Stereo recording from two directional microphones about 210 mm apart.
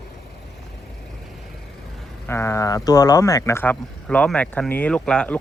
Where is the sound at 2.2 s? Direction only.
10° left (ahead or behind).